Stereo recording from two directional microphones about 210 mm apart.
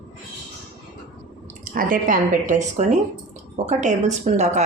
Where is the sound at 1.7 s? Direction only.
40° right (ahead or behind).